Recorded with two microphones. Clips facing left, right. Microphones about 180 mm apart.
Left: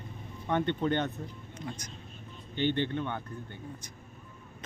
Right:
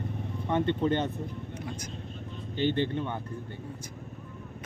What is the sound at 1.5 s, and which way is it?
Speech, 10° right (ahead or behind).